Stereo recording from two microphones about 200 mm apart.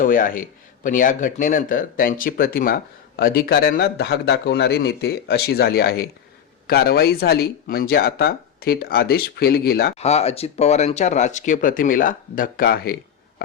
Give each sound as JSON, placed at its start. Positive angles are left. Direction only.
{"t": 0.0, "sound": "speech", "side_deg": 40}
{"t": 10.0, "sound": "speech", "side_deg": 30}